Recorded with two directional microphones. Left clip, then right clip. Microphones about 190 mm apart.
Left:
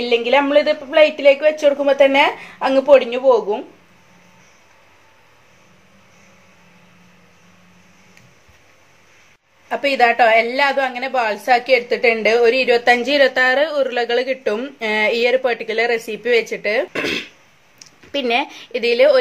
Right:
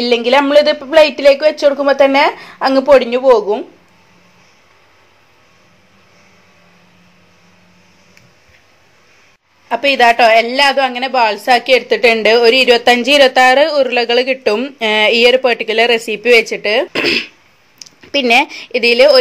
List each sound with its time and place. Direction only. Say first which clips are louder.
0.0 s a woman's voice: right 4 dB; 45° right (ahead or behind)
9.7 s a woman's voice: right 5 dB; 30° right (ahead or behind)